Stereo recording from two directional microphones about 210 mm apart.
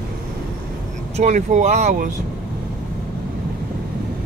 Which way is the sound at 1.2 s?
35° right (ahead or behind).